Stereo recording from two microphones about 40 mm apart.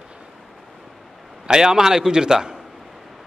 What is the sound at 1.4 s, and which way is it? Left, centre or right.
A man's voice, centre.